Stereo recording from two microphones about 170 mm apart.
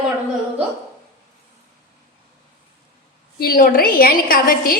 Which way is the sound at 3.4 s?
55° left (ahead or behind).